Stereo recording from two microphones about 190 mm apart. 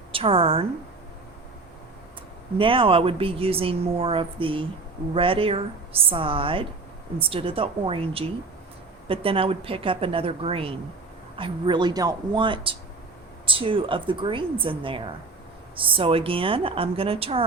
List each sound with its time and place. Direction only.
0.1 s a woman's voice: 30° right (ahead or behind)
2.6 s speech: 30° right (ahead or behind)